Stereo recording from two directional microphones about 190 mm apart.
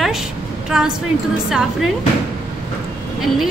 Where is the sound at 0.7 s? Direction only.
5° right (ahead or behind).